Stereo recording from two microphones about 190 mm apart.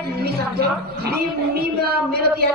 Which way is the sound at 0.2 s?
55° right (ahead or behind).